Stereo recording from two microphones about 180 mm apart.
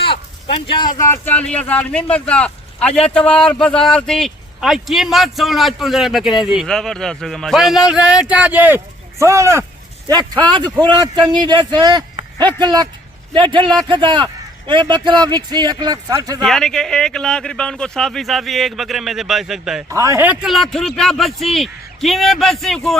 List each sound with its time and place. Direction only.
0.0 s a sound: 30° left (ahead or behind)
0.9 s a man's voice: 15° left (ahead or behind); by 16.4 s 20° right (ahead or behind)
16.4 s speech: 5° left (ahead or behind)
19.9 s speech: 15° right (ahead or behind)
20.4 s speech: centre (ahead or behind)